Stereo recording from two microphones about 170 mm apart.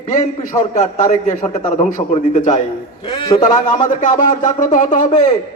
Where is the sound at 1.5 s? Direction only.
45° left (ahead or behind).